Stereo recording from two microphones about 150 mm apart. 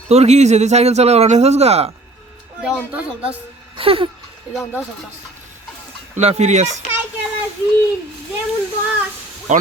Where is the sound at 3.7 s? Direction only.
40° right (ahead or behind).